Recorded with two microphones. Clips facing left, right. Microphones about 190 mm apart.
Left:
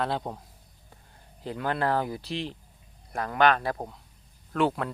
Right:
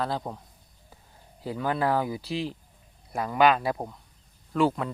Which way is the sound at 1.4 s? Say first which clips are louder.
Right 1 dB; 5° right (ahead or behind).